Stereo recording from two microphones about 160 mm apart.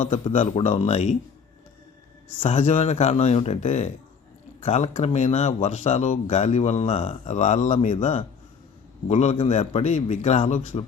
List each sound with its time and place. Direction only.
0.0 s speech: 45° left (ahead or behind)
2.4 s speech: 40° left (ahead or behind)